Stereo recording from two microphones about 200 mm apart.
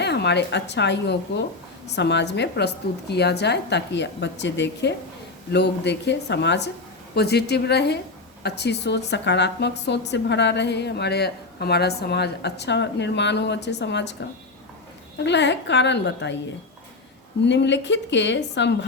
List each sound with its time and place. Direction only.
0.0 s a woman's voice: 55° left (ahead or behind)
15.2 s a woman's voice: 60° left (ahead or behind)
17.4 s a woman's voice: 60° left (ahead or behind)